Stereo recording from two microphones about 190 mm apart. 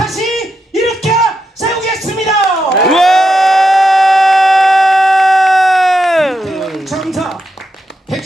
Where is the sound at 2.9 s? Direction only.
Centre (ahead or behind).